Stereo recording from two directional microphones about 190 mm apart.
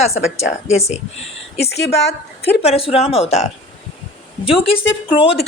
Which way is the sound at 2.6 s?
30° left (ahead or behind).